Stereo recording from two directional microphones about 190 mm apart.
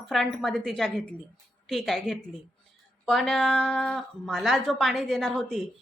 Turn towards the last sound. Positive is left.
turn(degrees=5)  # may be behind; listen again after turning